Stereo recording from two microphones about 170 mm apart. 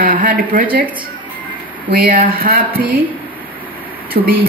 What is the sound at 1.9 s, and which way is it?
Speech, 60° right (ahead or behind).